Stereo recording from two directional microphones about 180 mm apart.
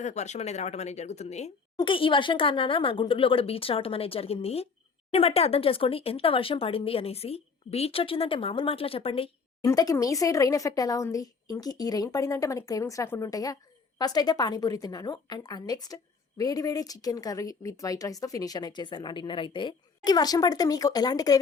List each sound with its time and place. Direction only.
0.0 s speech: 40° left (ahead or behind)
1.7 s speech: 25° left (ahead or behind)
9.6 s speech: 20° left (ahead or behind)